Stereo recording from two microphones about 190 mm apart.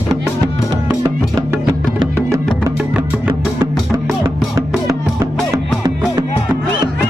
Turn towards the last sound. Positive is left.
turn(degrees=-15)  # may be behind; listen again after turning